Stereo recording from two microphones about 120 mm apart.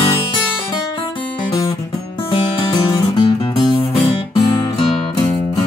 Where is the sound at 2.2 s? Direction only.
40° left (ahead or behind).